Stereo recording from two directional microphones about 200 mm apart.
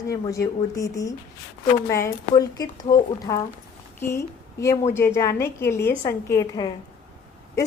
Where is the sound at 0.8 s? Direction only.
15° left (ahead or behind).